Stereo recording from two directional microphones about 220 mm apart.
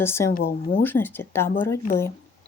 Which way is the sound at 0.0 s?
10° left (ahead or behind).